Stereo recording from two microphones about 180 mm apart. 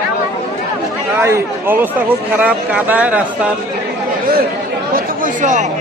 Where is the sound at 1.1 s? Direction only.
10° right (ahead or behind).